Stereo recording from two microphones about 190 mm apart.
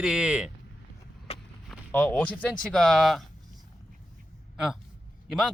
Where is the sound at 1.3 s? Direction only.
30° left (ahead or behind).